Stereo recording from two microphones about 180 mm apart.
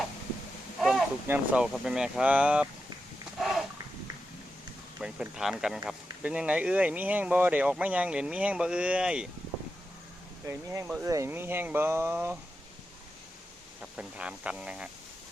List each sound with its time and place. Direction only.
0.8 s a sound: centre (ahead or behind)
1.3 s speech: 5° right (ahead or behind)
3.4 s a sound: centre (ahead or behind)
4.9 s speech: 5° right (ahead or behind)
10.5 s speech: 15° right (ahead or behind)
13.9 s speech: 5° right (ahead or behind)